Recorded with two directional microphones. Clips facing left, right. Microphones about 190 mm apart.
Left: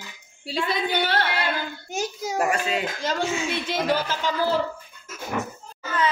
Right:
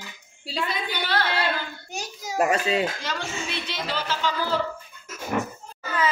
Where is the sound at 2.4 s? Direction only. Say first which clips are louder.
Right 2 dB; 25° right (ahead or behind).